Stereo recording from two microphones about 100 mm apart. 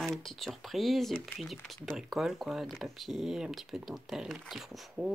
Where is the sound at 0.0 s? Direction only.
Centre (ahead or behind).